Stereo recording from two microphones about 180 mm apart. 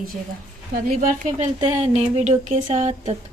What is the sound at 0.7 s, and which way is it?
Speech, 55° right (ahead or behind).